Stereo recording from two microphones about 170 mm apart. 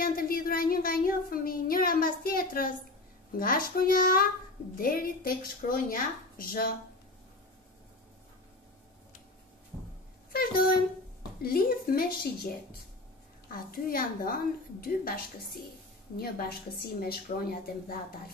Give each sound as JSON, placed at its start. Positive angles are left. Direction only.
{"t": 0.0, "sound": "child singing", "side_deg": 60}
{"t": 10.3, "sound": "child singing", "side_deg": 60}
{"t": 13.5, "sound": "child singing", "side_deg": 60}